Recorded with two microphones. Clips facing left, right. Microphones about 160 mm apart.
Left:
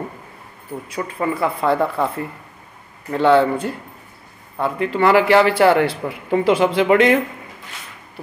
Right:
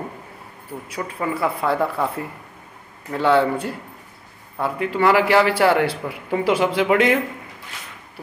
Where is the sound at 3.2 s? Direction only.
5° right (ahead or behind).